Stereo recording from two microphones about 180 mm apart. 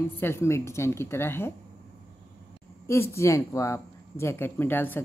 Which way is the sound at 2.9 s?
15° left (ahead or behind).